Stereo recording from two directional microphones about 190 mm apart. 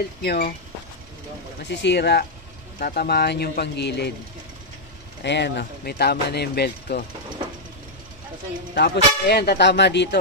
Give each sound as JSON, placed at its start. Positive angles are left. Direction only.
{"t": 0.2, "sound": "speech", "side_deg": 55}
{"t": 1.6, "sound": "speech", "side_deg": 65}
{"t": 5.2, "sound": "speech", "side_deg": 65}
{"t": 8.7, "sound": "speech", "side_deg": 60}